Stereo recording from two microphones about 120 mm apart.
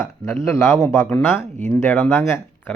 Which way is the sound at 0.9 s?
15° left (ahead or behind).